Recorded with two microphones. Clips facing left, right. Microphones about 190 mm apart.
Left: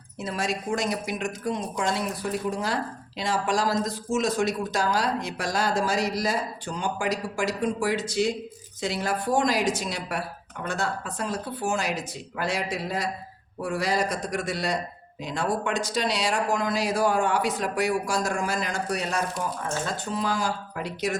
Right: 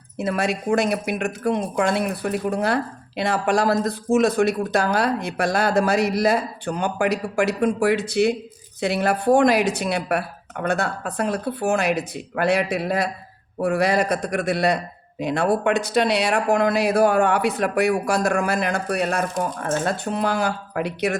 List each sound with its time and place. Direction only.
0.2 s speech: 60° right (ahead or behind)